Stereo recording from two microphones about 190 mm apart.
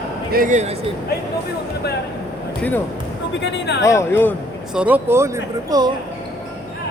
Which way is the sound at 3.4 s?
65° left (ahead or behind).